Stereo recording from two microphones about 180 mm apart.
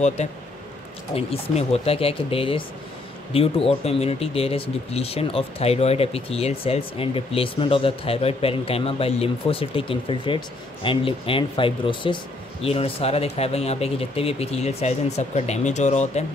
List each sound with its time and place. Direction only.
0.2 s speech: 40° left (ahead or behind)